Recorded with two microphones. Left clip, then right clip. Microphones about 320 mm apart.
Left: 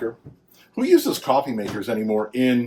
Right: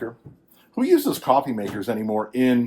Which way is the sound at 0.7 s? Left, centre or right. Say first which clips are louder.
Left 1 dB; centre.